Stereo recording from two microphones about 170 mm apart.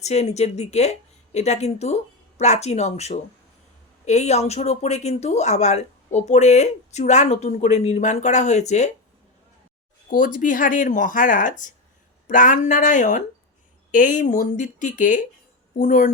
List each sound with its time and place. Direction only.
0.0 s speech: 40° left (ahead or behind)
10.1 s speech: 50° left (ahead or behind)